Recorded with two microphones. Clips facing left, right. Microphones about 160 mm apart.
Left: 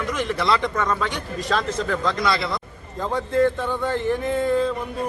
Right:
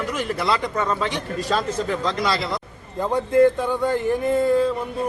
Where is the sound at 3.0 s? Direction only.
10° right (ahead or behind).